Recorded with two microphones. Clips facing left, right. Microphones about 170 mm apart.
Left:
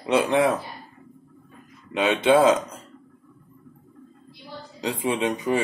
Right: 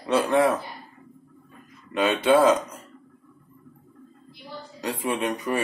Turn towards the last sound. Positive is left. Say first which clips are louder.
# left 2 dB
turn(degrees=20)  # may be behind; listen again after turning